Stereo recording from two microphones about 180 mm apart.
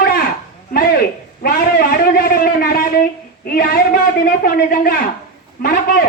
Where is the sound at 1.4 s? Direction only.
55° left (ahead or behind).